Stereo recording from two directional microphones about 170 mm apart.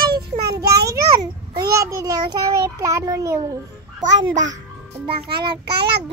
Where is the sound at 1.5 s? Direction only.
20° right (ahead or behind).